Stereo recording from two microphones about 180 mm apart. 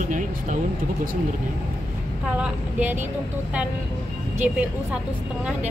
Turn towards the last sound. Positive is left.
turn(degrees=-5)  # may be behind; listen again after turning